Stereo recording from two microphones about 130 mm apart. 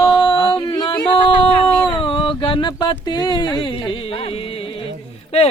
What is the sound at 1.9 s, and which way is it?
Speech, 40° left (ahead or behind).